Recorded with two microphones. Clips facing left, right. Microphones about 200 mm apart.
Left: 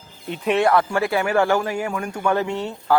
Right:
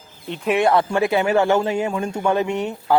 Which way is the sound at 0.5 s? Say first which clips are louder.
Right 1 dB; 20° right (ahead or behind).